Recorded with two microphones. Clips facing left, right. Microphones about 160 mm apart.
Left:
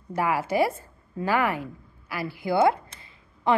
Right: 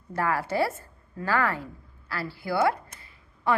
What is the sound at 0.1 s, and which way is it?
A woman's voice, 15° left (ahead or behind).